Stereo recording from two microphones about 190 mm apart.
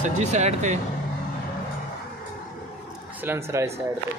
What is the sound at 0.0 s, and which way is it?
Speech, 35° right (ahead or behind).